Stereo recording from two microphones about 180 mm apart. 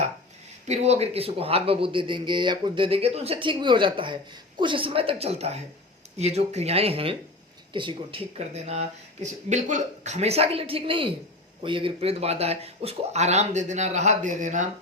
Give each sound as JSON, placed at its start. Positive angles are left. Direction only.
{"t": 0.7, "sound": "speech", "side_deg": -35}